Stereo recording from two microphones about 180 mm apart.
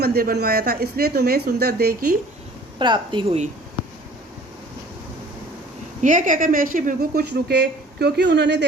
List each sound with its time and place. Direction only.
0.0 s a woman's voice: 60° right (ahead or behind)
2.7 s a woman's voice: 25° right (ahead or behind)
6.0 s a woman's voice: 45° right (ahead or behind); by 8.6 s 70° right (ahead or behind)